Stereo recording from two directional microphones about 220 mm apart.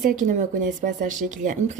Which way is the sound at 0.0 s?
40° right (ahead or behind).